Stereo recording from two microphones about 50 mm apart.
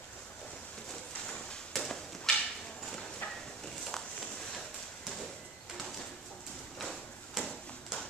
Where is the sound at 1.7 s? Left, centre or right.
Centre.